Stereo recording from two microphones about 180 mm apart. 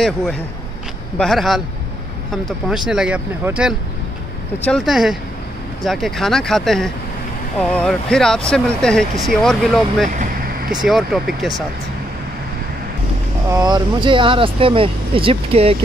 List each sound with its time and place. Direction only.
0.0 s speech: 5° left (ahead or behind)
2.7 s speech: 5° right (ahead or behind)
10.0 s vehicle: 50° right (ahead or behind)
10.7 s speech: centre (ahead or behind)
13.5 s speech: 20° right (ahead or behind)